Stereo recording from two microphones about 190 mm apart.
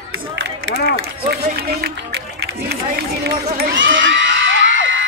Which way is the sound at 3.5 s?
75° right (ahead or behind).